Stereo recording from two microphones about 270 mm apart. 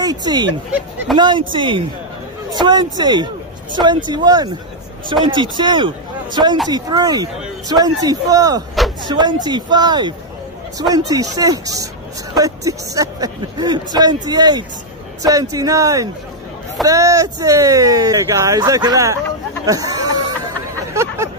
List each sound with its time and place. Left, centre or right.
0.0 s speech: centre
0.7 s speech: centre
1.1 s speech: centre
20.9 s hubbub: centre